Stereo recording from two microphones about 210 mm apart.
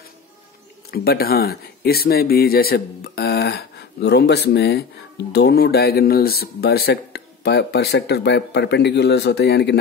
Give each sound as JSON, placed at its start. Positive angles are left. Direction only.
{"t": 0.9, "sound": "speech", "side_deg": 45}